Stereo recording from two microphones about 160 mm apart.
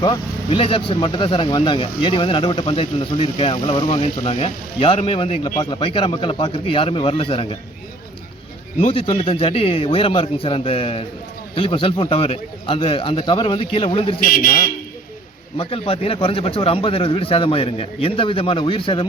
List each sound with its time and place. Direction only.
0.0 s speech: 30° left (ahead or behind)
5.5 s speech: 25° left (ahead or behind)
8.8 s speech: 35° left (ahead or behind)
14.2 s speech: 60° left (ahead or behind)
15.5 s speech: 35° left (ahead or behind)